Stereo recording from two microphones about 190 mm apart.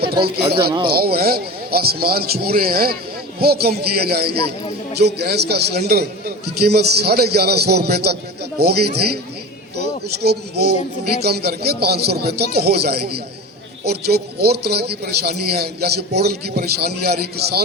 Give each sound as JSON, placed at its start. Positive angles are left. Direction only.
{"t": 0.0, "sound": "a man's voice", "side_deg": -55}